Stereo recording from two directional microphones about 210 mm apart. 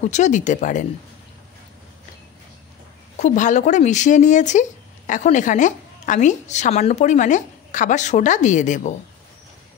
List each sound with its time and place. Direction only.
0.0 s speech: 35° left (ahead or behind)
3.2 s speech: 35° left (ahead or behind)